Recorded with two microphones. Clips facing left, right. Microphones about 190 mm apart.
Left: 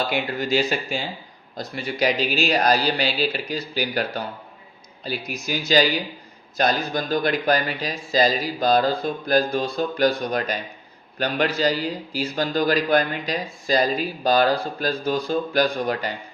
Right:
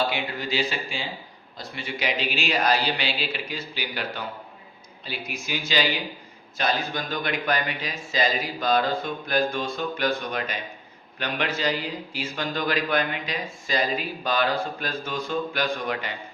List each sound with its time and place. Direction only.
0.1 s a man's voice: 45° left (ahead or behind)